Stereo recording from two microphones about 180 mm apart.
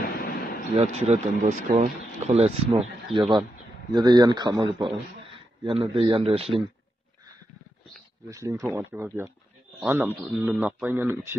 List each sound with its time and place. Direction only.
0.7 s speech: 35° right (ahead or behind)
8.3 s speech: 15° right (ahead or behind)